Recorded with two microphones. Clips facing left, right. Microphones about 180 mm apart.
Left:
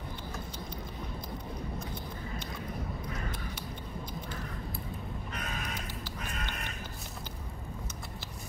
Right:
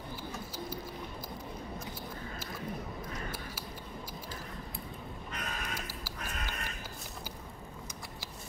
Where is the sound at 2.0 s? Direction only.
5° right (ahead or behind).